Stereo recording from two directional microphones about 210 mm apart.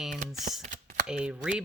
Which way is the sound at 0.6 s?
35° right (ahead or behind).